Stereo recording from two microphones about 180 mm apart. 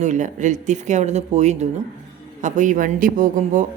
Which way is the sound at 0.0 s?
45° right (ahead or behind).